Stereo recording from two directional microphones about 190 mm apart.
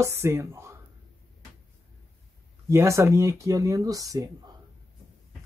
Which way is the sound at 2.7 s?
15° right (ahead or behind).